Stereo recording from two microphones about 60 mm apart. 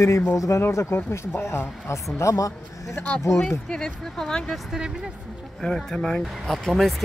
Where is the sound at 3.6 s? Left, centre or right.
Centre.